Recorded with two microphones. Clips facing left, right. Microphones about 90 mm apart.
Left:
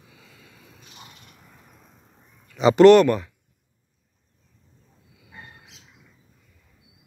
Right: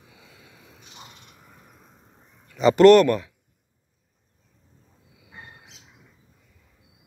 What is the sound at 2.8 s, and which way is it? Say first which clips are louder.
Speech: left 1 dB; 20° left (ahead or behind).